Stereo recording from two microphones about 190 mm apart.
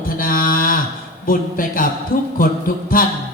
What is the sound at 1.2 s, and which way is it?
Speech, 50° left (ahead or behind).